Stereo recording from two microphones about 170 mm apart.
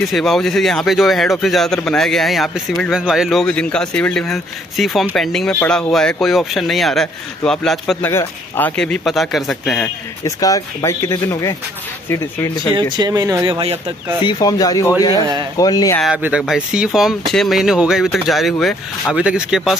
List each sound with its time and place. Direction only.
0.1 s speech: centre (ahead or behind)
8.1 s speech: 10° left (ahead or behind)
10.2 s speech: 20° left (ahead or behind)
12.9 s speech: 25° right (ahead or behind)
13.5 s speech: 35° right (ahead or behind)
14.2 s speech: 25° left (ahead or behind)
16.0 s speech: 5° right (ahead or behind)